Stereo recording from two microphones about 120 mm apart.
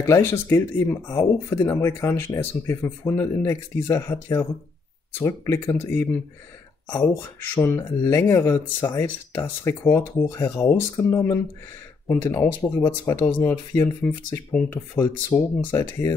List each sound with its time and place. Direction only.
0.0 s speech: 20° left (ahead or behind)